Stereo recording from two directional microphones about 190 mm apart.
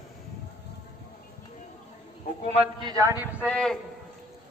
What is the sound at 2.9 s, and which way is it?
Speech, 20° right (ahead or behind).